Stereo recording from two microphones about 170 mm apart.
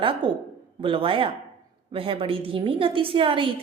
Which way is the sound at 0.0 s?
30° right (ahead or behind).